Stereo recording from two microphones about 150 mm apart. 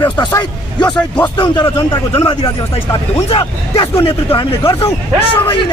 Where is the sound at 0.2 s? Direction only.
30° left (ahead or behind).